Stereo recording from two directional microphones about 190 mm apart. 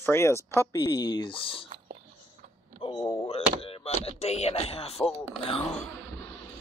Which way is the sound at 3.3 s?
30° left (ahead or behind).